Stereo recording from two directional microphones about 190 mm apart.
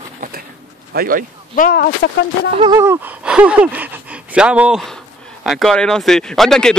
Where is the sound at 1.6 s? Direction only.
50° left (ahead or behind).